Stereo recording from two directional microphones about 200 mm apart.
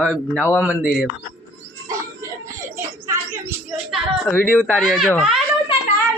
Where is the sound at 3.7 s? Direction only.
Centre (ahead or behind).